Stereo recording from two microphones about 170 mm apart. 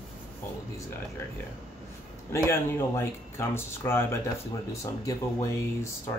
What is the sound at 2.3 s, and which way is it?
Speech, 15° left (ahead or behind).